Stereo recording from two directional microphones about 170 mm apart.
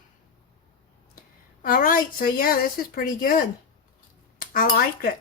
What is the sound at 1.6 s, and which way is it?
Speech, 55° left (ahead or behind).